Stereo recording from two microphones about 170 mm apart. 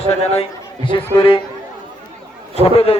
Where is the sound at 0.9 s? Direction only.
30° left (ahead or behind).